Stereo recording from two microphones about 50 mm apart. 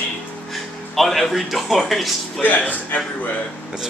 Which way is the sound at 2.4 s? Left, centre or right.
Left.